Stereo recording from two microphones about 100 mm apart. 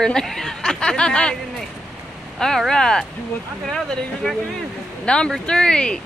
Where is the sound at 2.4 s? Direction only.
5° left (ahead or behind).